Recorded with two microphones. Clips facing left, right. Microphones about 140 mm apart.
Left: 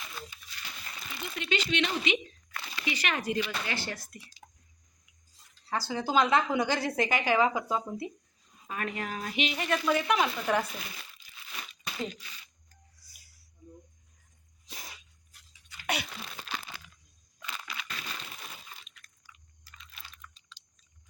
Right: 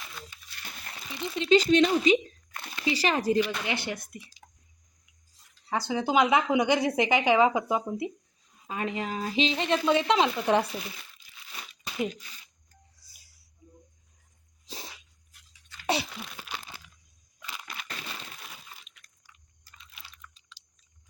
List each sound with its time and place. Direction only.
1.1 s speech: 30° right (ahead or behind)
3.4 s a woman's voice: 15° right (ahead or behind)
5.6 s a woman's voice: 20° right (ahead or behind)
13.0 s a sound: 25° right (ahead or behind)
14.7 s dog: 30° right (ahead or behind)
16.2 s crumpling: 5° right (ahead or behind)
18.1 s a sound: centre (ahead or behind)